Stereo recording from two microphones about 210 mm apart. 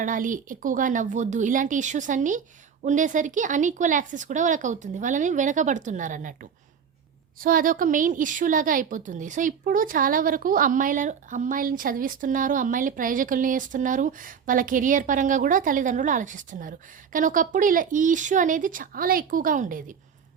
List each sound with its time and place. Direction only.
0.0 s a woman's voice: 40° right (ahead or behind)